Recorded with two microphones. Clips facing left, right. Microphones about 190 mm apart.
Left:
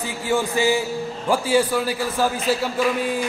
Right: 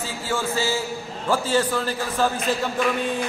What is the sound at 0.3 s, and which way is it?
A man's voice, 15° left (ahead or behind).